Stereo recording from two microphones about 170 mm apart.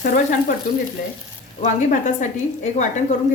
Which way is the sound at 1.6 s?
45° left (ahead or behind).